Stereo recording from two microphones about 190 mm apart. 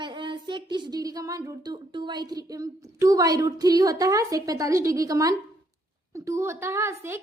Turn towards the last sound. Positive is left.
turn(degrees=-15)  # may be behind; listen again after turning